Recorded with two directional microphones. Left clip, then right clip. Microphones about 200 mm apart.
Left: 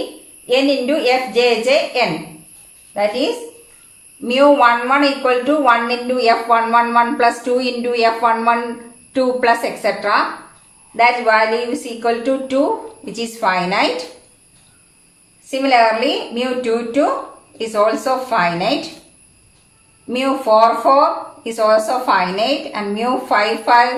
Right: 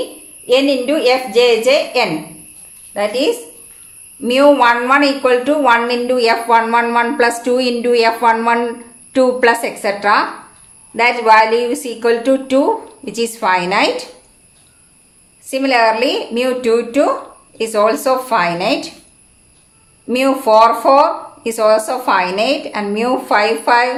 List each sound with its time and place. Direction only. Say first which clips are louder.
0.4 s a woman's voice: right 2 dB; 45° right (ahead or behind)
4.3 s a woman's voice: right 1 dB; 45° right (ahead or behind)
15.4 s a woman's voice: even; 50° right (ahead or behind)
20.1 s a woman's voice: right 3 dB; 50° right (ahead or behind)